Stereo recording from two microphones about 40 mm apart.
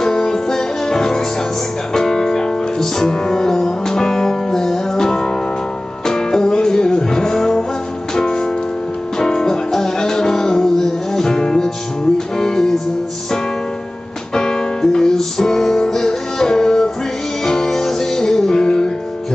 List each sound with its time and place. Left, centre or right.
0.0 s music: centre
14.3 s music: centre